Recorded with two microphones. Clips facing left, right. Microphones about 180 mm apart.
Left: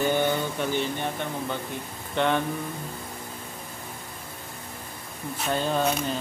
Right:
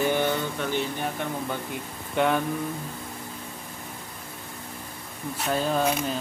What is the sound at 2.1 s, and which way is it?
Speech, 5° right (ahead or behind).